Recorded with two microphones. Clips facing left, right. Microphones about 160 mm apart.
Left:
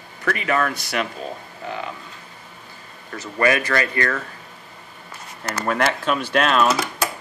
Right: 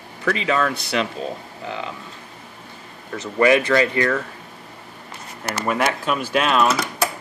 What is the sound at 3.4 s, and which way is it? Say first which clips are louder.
Speech: right 4 dB; 20° right (ahead or behind).